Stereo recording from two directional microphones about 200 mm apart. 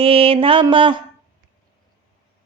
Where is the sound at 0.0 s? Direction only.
30° right (ahead or behind).